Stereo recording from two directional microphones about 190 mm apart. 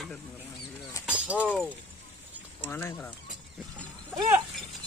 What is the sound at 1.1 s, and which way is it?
Speech, 5° right (ahead or behind).